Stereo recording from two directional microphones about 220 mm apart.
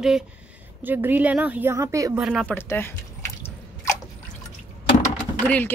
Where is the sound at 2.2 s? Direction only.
5° right (ahead or behind).